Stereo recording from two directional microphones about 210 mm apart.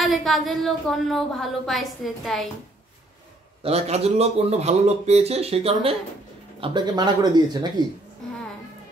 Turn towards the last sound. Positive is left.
turn(degrees=-20)  # may be behind; listen again after turning